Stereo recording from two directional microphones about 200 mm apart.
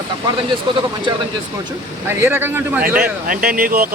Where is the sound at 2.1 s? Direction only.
10° right (ahead or behind).